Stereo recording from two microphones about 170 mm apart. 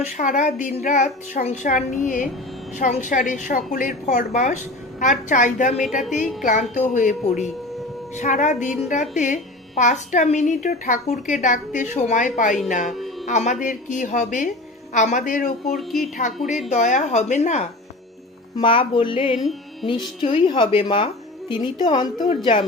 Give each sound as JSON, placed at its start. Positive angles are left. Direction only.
{"t": 0.2, "sound": "a woman's voice", "side_deg": 45}
{"t": 5.8, "sound": "speech", "side_deg": 0}
{"t": 6.4, "sound": "a woman's voice", "side_deg": 45}
{"t": 15.7, "sound": "speech", "side_deg": 0}
{"t": 16.6, "sound": "a woman's voice", "side_deg": 45}
{"t": 18.6, "sound": "a sound", "side_deg": 30}
{"t": 19.8, "sound": "speech", "side_deg": 30}